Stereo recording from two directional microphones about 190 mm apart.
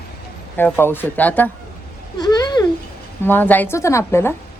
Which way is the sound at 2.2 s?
20° left (ahead or behind).